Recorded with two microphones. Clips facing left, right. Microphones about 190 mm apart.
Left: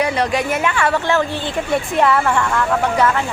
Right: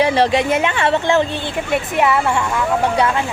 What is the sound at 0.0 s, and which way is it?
A woman's voice, 30° right (ahead or behind).